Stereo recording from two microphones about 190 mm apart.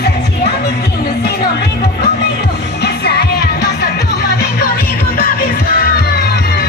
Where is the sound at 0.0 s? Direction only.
55° left (ahead or behind).